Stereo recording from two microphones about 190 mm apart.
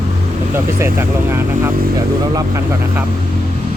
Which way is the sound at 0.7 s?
10° right (ahead or behind).